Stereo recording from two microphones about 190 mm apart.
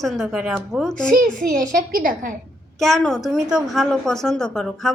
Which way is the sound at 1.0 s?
45° right (ahead or behind).